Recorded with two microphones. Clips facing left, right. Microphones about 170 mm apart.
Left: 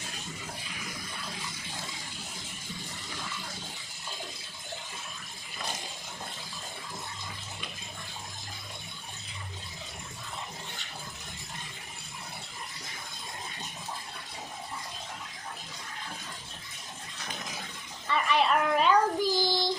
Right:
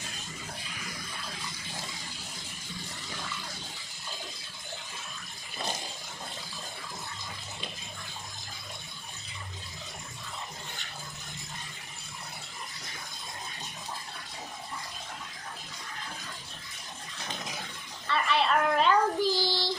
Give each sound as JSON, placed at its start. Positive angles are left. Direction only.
{"t": 18.1, "sound": "child singing", "side_deg": 10}